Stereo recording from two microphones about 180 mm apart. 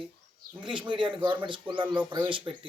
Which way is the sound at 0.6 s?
25° right (ahead or behind).